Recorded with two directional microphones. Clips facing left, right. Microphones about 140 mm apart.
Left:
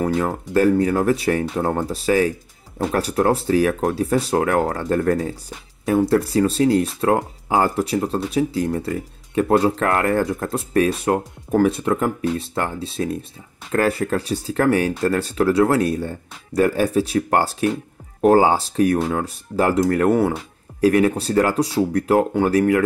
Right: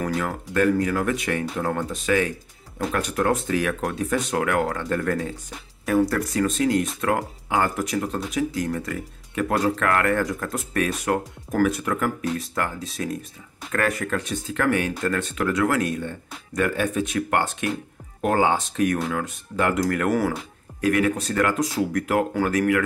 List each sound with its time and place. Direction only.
0.0 s speech: 30° left (ahead or behind)